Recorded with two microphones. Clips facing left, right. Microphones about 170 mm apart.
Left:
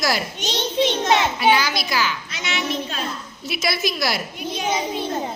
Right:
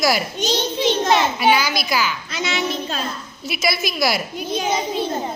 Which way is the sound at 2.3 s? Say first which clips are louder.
Right 3 dB; 35° right (ahead or behind).